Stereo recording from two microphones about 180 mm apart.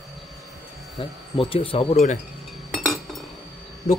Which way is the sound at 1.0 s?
30° left (ahead or behind).